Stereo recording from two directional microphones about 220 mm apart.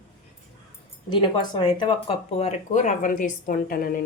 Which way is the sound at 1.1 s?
20° left (ahead or behind).